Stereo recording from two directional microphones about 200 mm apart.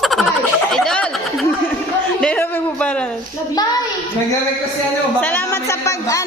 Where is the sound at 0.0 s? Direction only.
Centre (ahead or behind).